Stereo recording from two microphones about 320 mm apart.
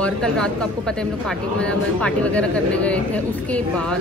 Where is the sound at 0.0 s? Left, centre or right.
Centre.